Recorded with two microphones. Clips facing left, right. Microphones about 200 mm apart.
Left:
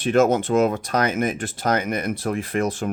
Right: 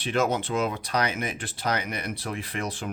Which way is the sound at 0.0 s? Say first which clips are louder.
Left 8 dB; 45° left (ahead or behind).